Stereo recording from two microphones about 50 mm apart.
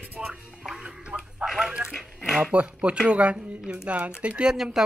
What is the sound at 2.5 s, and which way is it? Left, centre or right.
Speech, right.